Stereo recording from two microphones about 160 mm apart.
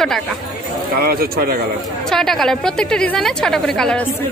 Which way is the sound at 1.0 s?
70° right (ahead or behind).